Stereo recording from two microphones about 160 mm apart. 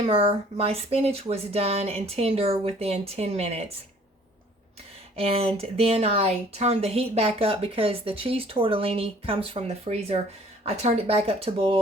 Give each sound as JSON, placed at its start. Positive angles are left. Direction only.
{"t": 0.0, "sound": "speech", "side_deg": -35}
{"t": 5.1, "sound": "speech", "side_deg": -40}